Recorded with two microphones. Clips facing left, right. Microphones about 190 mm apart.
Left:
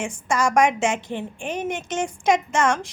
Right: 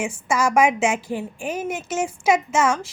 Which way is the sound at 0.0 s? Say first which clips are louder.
Right 1 dB; 5° right (ahead or behind).